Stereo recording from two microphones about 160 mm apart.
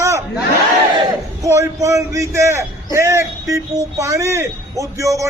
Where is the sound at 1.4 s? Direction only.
20° right (ahead or behind).